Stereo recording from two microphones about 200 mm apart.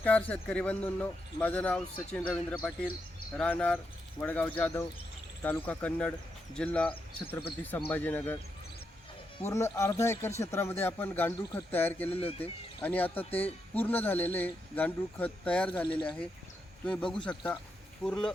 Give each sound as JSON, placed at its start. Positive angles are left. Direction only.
{"t": 0.0, "sound": "speech", "side_deg": 10}
{"t": 9.4, "sound": "speech", "side_deg": 15}
{"t": 12.0, "sound": "speech", "side_deg": 30}
{"t": 12.8, "sound": "a man's voice", "side_deg": 10}